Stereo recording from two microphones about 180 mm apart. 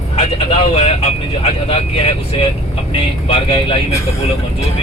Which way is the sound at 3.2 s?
30° left (ahead or behind).